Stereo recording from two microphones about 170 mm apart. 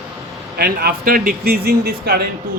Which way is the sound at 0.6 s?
65° right (ahead or behind).